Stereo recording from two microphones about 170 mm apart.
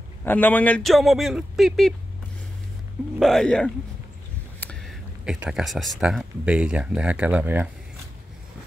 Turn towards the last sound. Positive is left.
turn(degrees=-10)  # may be behind; listen again after turning